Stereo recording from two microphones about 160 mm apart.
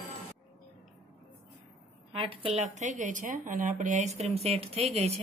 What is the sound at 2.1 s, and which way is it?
Speech, 35° right (ahead or behind).